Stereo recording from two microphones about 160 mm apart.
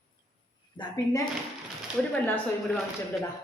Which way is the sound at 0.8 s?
30° left (ahead or behind).